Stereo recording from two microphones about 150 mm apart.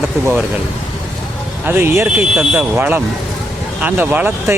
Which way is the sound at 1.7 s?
15° right (ahead or behind).